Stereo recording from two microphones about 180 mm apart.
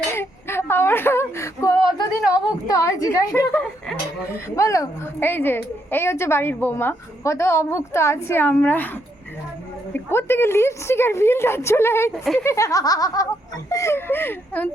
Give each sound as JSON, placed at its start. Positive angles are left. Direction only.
{"t": 0.2, "sound": "a woman's voice", "side_deg": 15}
{"t": 3.5, "sound": "speech", "side_deg": 5}
{"t": 4.5, "sound": "a woman's voice", "side_deg": 15}
{"t": 9.9, "sound": "a woman's voice", "side_deg": 15}
{"t": 12.1, "sound": "speech", "side_deg": 0}
{"t": 12.4, "sound": "a woman's voice", "side_deg": 15}